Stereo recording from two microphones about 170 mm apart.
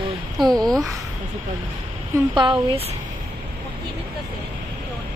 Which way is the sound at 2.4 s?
25° right (ahead or behind).